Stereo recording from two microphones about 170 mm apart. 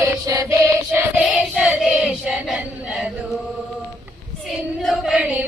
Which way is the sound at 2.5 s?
5° right (ahead or behind).